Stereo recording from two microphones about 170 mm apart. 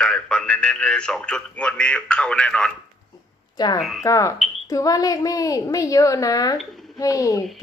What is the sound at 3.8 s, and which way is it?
Speech, centre (ahead or behind).